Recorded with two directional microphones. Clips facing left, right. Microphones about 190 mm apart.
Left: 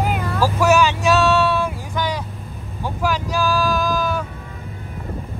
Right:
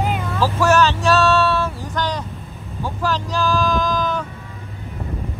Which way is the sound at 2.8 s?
10° left (ahead or behind).